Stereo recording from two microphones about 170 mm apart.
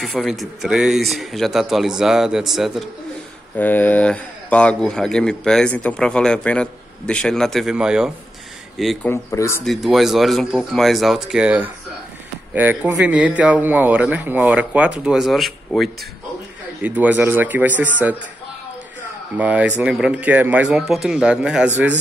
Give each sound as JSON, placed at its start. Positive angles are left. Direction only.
{"t": 0.0, "sound": "speech", "side_deg": 0}
{"t": 3.5, "sound": "speech", "side_deg": 10}
{"t": 9.1, "sound": "speech", "side_deg": 15}
{"t": 9.7, "sound": "speech", "side_deg": 0}
{"t": 19.3, "sound": "speech", "side_deg": -10}